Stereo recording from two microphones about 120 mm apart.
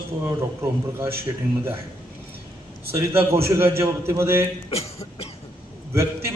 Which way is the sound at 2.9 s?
20° right (ahead or behind).